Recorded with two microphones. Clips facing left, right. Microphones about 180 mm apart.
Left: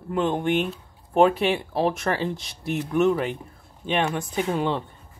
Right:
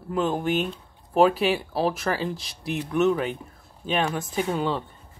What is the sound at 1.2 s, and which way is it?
Speech, 25° left (ahead or behind).